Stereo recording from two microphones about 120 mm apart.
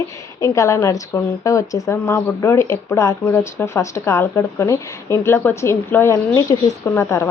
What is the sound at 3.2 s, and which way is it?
Speech, 15° left (ahead or behind).